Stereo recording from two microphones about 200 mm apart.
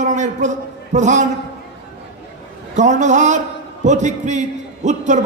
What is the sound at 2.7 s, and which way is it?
A man's voice, 35° right (ahead or behind).